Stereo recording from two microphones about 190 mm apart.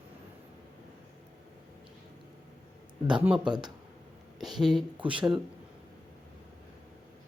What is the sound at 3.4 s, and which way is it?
Speech, 25° right (ahead or behind).